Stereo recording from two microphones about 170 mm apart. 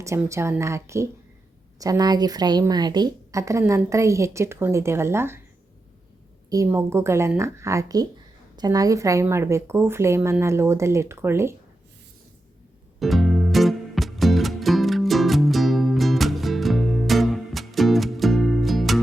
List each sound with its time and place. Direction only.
0.0 s a woman's voice: 15° right (ahead or behind)
6.5 s a woman's voice: 20° right (ahead or behind)
13.0 s music: centre (ahead or behind)